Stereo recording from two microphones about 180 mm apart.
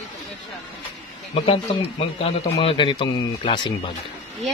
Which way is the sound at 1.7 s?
30° left (ahead or behind).